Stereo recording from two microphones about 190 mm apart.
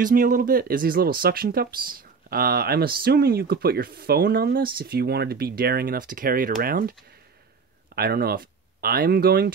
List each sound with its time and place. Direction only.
0.0 s speech: 45° right (ahead or behind)